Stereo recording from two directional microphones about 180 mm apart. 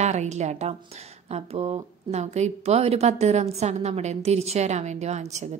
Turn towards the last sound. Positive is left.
turn(degrees=-40)  # may be behind; listen again after turning